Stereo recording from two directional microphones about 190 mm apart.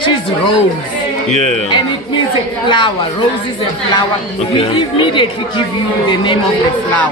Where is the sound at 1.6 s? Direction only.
25° left (ahead or behind).